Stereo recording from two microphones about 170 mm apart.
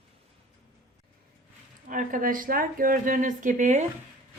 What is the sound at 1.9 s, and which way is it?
Speech, 50° right (ahead or behind).